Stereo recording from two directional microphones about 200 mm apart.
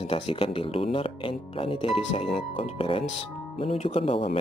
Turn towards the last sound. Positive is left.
turn(degrees=25)  # may be behind; listen again after turning